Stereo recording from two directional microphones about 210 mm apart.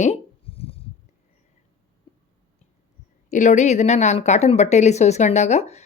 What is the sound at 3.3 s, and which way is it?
A woman's voice, 35° left (ahead or behind).